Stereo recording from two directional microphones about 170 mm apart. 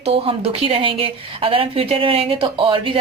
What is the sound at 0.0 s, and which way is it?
Speech, 35° right (ahead or behind).